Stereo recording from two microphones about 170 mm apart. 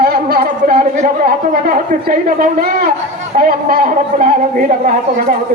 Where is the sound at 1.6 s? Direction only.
60° right (ahead or behind).